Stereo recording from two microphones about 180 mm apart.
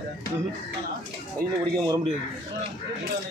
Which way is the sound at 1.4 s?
60° right (ahead or behind).